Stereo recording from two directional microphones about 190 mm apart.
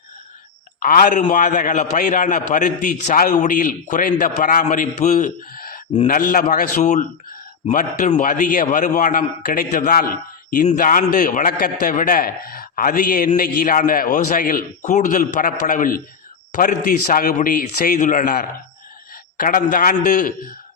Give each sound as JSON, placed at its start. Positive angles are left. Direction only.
{"t": 0.8, "sound": "a man's voice", "side_deg": 45}